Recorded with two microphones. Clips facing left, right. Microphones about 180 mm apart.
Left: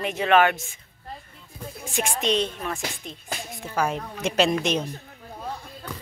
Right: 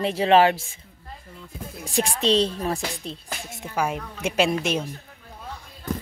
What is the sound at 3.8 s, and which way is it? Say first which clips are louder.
A woman's voice: even; 10° right (ahead or behind).